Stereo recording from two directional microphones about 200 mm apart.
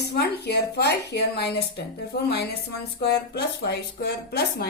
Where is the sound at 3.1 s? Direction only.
55° left (ahead or behind).